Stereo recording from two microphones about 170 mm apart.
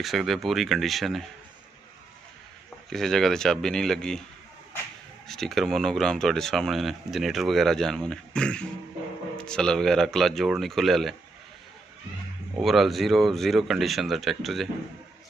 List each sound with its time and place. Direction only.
0.0 s speech: centre (ahead or behind)
2.9 s speech: centre (ahead or behind)
5.3 s speech: centre (ahead or behind)
12.5 s speech: centre (ahead or behind)